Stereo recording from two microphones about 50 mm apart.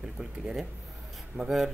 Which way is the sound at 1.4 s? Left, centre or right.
Right.